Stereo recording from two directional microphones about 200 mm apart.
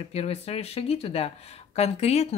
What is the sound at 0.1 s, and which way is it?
A woman's voice, 30° left (ahead or behind).